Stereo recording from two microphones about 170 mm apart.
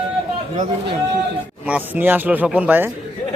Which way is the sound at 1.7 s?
10° right (ahead or behind).